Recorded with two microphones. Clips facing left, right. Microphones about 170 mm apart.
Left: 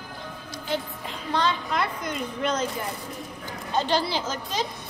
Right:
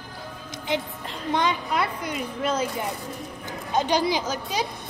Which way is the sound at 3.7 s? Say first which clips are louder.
Right 2 dB; 15° right (ahead or behind).